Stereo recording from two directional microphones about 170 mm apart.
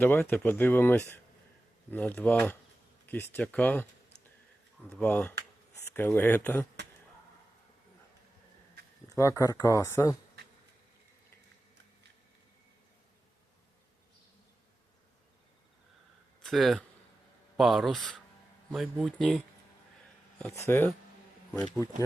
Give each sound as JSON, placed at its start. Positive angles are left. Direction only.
{"t": 0.0, "sound": "speech", "side_deg": 10}
{"t": 4.9, "sound": "speech", "side_deg": 10}
{"t": 9.0, "sound": "speech", "side_deg": 20}
{"t": 16.4, "sound": "speech", "side_deg": 0}
{"t": 20.5, "sound": "speech", "side_deg": 15}